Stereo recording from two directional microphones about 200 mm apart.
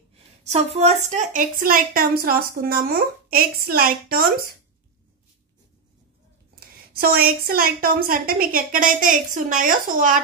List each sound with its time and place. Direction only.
0.4 s a sound: 30° right (ahead or behind)
0.8 s a woman's voice: 35° right (ahead or behind)
6.6 s a woman's voice: 50° right (ahead or behind)